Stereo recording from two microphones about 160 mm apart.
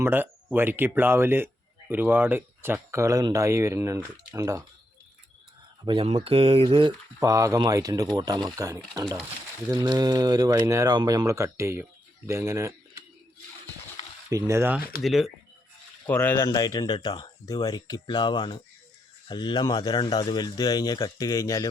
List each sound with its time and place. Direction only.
0.0 s speech: 15° right (ahead or behind)
5.8 s speech: 30° right (ahead or behind)
14.3 s speech: 20° right (ahead or behind)
15.0 s speech: centre (ahead or behind)
16.0 s speech: 10° left (ahead or behind)